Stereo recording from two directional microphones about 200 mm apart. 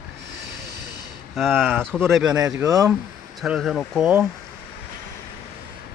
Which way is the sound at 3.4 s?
Centre (ahead or behind).